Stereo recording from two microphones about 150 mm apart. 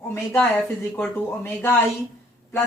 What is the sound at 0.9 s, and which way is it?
Speech, 15° left (ahead or behind).